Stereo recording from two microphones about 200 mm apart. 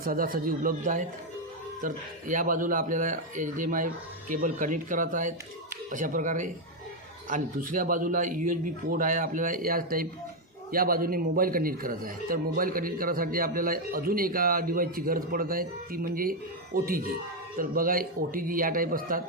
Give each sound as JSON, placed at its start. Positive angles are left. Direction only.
{"t": 0.0, "sound": "a man's voice", "side_deg": -45}